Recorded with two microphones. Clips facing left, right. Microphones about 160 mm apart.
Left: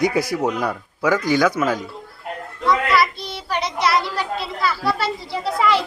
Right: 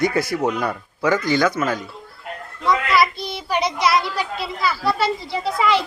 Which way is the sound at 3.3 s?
5° right (ahead or behind).